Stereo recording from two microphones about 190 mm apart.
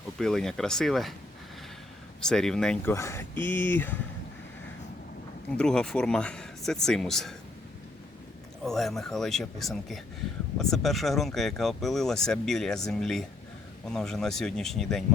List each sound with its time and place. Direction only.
0.2 s speech: centre (ahead or behind)
2.2 s speech: 5° left (ahead or behind)
2.9 s speech: 15° left (ahead or behind)
5.5 s speech: 5° left (ahead or behind)
8.6 s speech: centre (ahead or behind)